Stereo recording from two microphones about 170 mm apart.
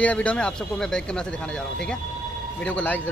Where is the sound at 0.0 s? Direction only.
10° left (ahead or behind).